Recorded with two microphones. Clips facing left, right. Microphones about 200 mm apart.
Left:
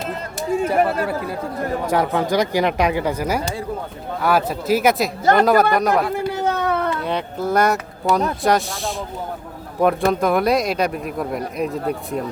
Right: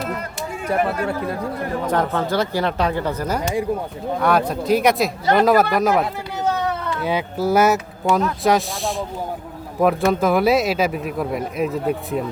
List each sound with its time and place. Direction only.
0.7 s speech: 5° left (ahead or behind)
6.1 s a sound: 55° left (ahead or behind)
7.0 s speech: 5° right (ahead or behind)